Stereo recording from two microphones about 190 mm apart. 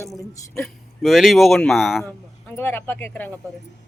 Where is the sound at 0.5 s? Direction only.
Centre (ahead or behind).